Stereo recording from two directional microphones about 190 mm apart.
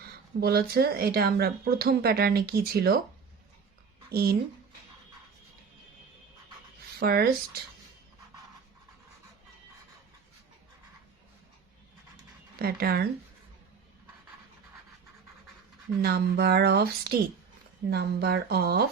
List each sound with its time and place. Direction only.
0.0 s speech: 55° right (ahead or behind)
4.1 s speech: 55° right (ahead or behind)
7.0 s speech: 55° right (ahead or behind)
12.5 s speech: 55° right (ahead or behind)
16.0 s speech: 55° right (ahead or behind)